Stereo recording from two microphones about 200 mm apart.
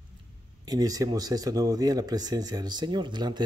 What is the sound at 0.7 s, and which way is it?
Speech, 20° right (ahead or behind).